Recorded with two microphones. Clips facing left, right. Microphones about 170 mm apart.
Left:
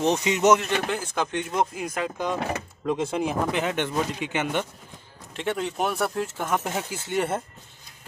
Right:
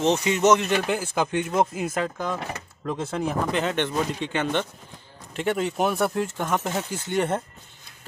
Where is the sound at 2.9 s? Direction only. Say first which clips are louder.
Left 2 dB; 15° left (ahead or behind).